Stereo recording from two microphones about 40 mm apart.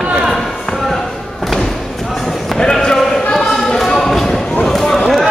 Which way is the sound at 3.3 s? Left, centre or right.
Centre.